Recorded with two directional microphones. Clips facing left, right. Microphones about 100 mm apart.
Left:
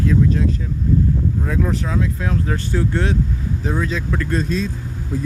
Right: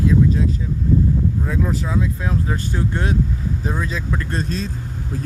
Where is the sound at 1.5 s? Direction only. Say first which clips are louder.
Left 1 dB; 5° right (ahead or behind).